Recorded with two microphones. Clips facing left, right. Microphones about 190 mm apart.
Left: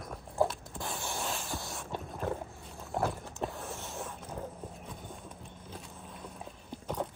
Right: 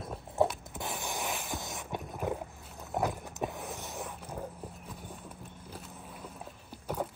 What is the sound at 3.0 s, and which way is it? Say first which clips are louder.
Vehicle: right 1 dB; 15° right (ahead or behind).